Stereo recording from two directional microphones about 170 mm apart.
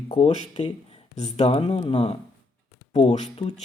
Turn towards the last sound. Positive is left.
turn(degrees=35)  # may be behind; listen again after turning